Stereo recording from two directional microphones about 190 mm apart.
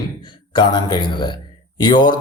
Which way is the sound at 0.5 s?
25° left (ahead or behind).